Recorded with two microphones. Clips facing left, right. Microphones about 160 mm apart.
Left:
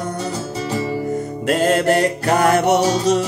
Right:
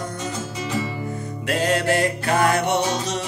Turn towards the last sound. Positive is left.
turn(degrees=45)  # may be behind; listen again after turning